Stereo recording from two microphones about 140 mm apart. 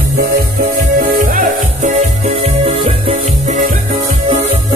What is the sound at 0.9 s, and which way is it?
Music, 75° right (ahead or behind).